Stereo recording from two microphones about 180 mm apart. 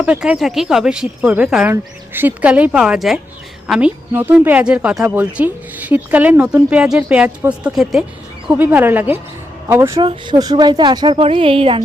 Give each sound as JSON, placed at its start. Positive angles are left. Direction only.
{"t": 0.0, "sound": "a woman's voice", "side_deg": -5}
{"t": 10.0, "sound": "a woman's voice", "side_deg": -25}